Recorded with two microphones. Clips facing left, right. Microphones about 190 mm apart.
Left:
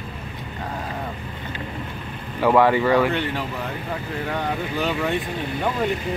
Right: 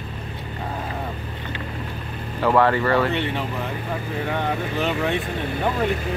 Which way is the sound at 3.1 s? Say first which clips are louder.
Even; centre (ahead or behind).